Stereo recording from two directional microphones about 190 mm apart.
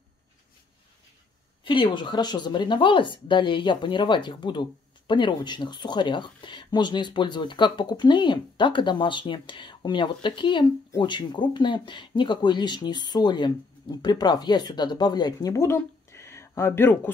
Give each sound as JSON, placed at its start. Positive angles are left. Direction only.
{"t": 1.6, "sound": "a woman's voice", "side_deg": 25}